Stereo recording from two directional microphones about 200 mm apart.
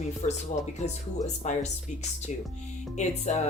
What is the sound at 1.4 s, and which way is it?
Speech, 35° left (ahead or behind).